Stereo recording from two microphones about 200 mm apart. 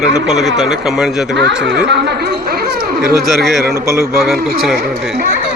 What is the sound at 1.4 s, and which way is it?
Speech, 60° right (ahead or behind).